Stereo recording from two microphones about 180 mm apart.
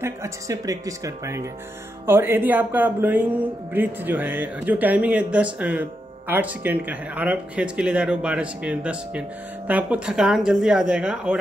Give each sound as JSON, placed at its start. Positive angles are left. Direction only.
{"t": 0.0, "sound": "speech", "side_deg": -15}